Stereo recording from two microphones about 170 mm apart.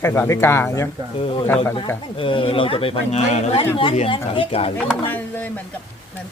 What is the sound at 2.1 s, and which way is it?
Speech, 30° left (ahead or behind).